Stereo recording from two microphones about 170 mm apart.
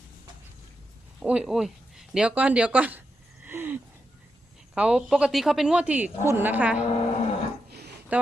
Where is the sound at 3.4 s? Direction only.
10° right (ahead or behind).